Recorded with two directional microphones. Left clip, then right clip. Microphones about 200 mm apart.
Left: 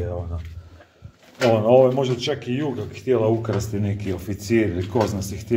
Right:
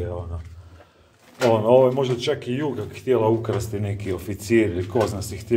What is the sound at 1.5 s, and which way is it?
A man's voice, 5° left (ahead or behind).